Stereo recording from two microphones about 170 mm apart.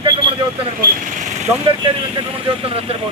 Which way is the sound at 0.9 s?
50° right (ahead or behind).